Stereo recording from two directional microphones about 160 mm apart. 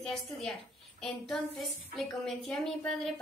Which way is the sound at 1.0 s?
Centre (ahead or behind).